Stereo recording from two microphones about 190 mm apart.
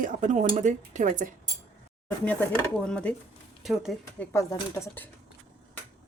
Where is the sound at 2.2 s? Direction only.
5° left (ahead or behind).